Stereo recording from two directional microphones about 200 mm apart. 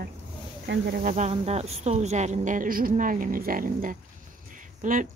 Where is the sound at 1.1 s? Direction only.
35° right (ahead or behind).